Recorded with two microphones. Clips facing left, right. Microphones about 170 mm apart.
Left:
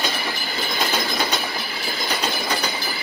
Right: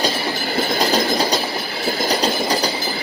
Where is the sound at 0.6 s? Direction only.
40° right (ahead or behind).